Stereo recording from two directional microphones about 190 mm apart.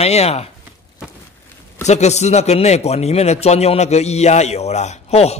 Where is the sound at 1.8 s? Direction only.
35° left (ahead or behind).